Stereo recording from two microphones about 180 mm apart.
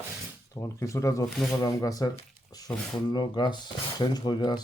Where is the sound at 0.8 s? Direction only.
15° left (ahead or behind).